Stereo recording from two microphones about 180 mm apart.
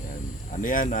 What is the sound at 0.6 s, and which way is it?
Speech, 45° left (ahead or behind).